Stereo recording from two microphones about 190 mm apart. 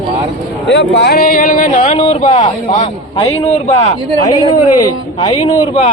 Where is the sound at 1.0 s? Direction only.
55° left (ahead or behind); by 4.3 s 40° left (ahead or behind).